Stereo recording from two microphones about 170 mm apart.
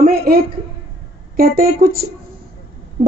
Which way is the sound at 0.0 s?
60° right (ahead or behind).